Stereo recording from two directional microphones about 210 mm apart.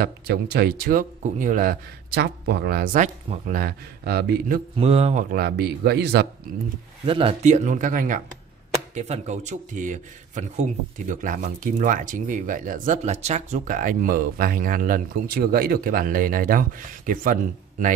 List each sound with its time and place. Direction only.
0.0 s speech: 50° right (ahead or behind)
4.7 s speech: 30° right (ahead or behind)
5.3 s speech: 50° right (ahead or behind)
7.1 s a man's voice: 25° right (ahead or behind)